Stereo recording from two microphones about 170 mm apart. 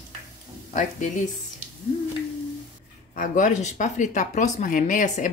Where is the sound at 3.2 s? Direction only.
45° left (ahead or behind).